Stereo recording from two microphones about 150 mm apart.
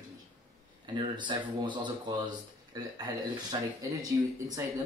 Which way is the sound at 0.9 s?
30° right (ahead or behind).